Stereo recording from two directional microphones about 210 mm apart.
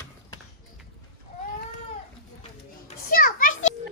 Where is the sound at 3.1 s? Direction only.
45° left (ahead or behind).